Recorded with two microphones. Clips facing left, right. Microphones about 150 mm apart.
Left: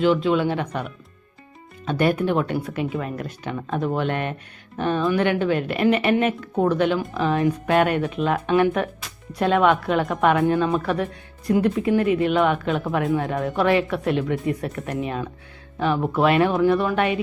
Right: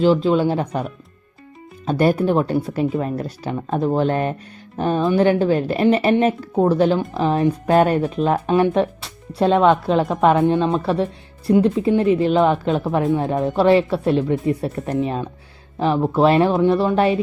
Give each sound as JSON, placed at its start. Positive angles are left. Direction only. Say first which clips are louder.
{"t": 0.0, "sound": "speech", "louder": "right 3 dB", "side_deg": -35}